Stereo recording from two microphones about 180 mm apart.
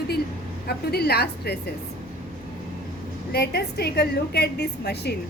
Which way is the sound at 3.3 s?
65° left (ahead or behind).